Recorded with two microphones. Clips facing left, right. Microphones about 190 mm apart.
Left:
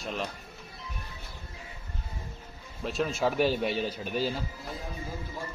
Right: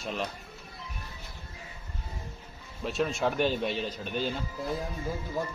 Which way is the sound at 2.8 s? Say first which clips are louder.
Even; centre (ahead or behind).